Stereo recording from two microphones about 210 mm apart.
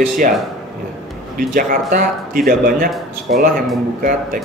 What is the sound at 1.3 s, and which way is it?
Speech, 40° right (ahead or behind).